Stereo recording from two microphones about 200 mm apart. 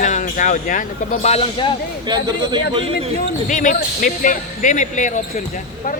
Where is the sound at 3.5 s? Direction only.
40° left (ahead or behind).